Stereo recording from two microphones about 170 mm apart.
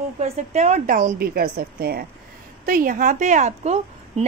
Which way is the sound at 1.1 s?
65° right (ahead or behind).